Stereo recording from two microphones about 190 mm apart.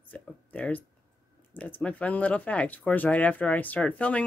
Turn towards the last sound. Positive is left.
turn(degrees=5)  # may be behind; listen again after turning